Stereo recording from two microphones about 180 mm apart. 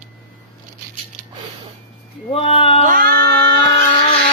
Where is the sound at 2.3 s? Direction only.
30° left (ahead or behind).